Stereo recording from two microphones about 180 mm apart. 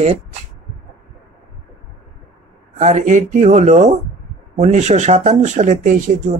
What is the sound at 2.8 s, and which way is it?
Speech, 40° right (ahead or behind).